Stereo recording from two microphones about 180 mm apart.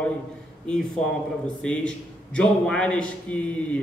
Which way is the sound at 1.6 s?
5° left (ahead or behind).